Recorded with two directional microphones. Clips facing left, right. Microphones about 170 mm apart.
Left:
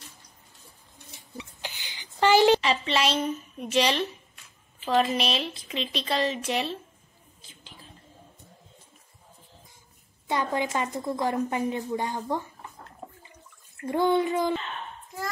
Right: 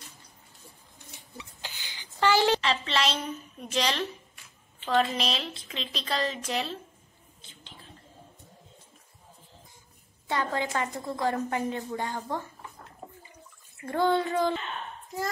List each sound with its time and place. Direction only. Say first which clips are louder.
1.4 s a sound: left 4 dB; 20° left (ahead or behind)
3.7 s a woman's voice: left 4 dB; 5° left (ahead or behind)
10.2 s a woman's voice: left 2 dB; 15° left (ahead or behind)
13.8 s a woman's voice: left 2 dB; 15° left (ahead or behind)